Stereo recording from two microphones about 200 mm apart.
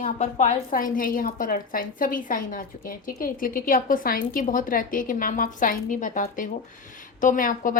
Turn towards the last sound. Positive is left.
turn(degrees=40)  # may be behind; listen again after turning